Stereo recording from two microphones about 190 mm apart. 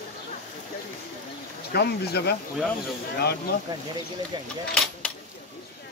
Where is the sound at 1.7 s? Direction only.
60° left (ahead or behind).